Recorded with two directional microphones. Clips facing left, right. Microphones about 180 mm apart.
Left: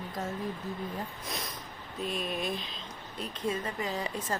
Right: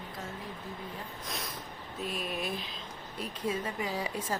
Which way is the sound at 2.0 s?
5° right (ahead or behind).